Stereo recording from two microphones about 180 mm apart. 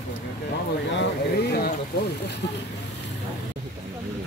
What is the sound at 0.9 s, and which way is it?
Speech, 75° left (ahead or behind).